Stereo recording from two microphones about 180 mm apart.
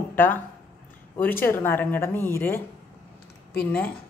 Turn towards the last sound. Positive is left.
turn(degrees=5)  # may be behind; listen again after turning